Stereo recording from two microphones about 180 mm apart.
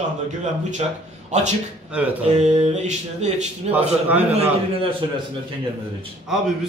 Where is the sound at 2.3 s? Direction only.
40° right (ahead or behind).